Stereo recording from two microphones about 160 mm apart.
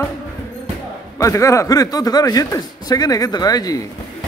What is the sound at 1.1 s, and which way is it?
A man's voice, 20° left (ahead or behind).